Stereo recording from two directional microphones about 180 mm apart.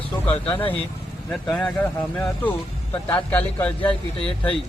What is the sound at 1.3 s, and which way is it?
A man's voice, 5° left (ahead or behind).